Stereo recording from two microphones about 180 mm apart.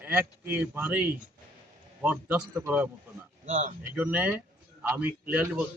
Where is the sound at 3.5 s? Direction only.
45° right (ahead or behind).